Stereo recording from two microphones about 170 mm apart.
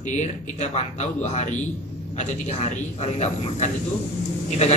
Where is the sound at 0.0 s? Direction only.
45° left (ahead or behind).